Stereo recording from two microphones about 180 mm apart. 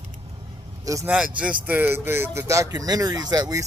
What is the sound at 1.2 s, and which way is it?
Speech, 5° right (ahead or behind).